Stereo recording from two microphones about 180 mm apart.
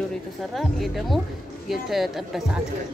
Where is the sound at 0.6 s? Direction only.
Centre (ahead or behind).